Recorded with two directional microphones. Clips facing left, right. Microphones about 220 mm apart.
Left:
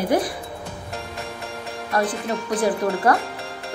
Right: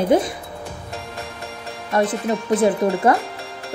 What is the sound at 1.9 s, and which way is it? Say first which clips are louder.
Speech: right 4 dB; 25° right (ahead or behind).